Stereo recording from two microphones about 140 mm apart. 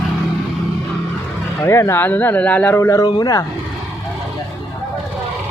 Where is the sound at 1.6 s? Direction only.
20° left (ahead or behind).